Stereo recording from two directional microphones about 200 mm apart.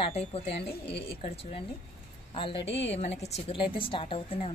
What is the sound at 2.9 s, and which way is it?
Speech, 30° left (ahead or behind).